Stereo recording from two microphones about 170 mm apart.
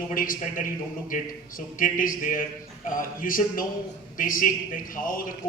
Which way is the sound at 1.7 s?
55° left (ahead or behind).